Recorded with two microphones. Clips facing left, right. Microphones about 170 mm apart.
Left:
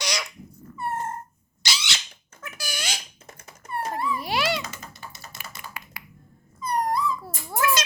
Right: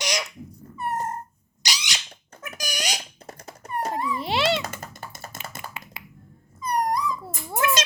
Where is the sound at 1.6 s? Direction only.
15° right (ahead or behind).